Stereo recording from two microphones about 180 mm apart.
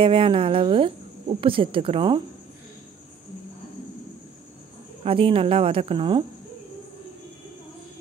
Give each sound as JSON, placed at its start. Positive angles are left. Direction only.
{"t": 0.0, "sound": "a woman's voice", "side_deg": -30}
{"t": 5.0, "sound": "speech", "side_deg": -30}